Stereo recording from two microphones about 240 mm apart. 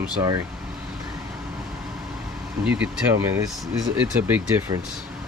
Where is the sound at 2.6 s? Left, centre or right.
Centre.